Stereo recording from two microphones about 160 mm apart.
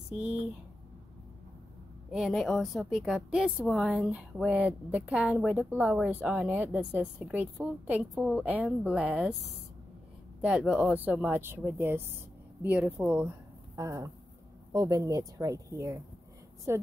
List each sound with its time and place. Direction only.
0.1 s a woman's voice: 5° right (ahead or behind)
2.0 s a woman's voice: 5° right (ahead or behind)
10.4 s a woman's voice: 5° right (ahead or behind)